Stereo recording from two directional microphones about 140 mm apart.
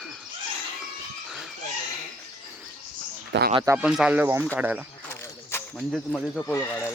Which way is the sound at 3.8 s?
5° right (ahead or behind).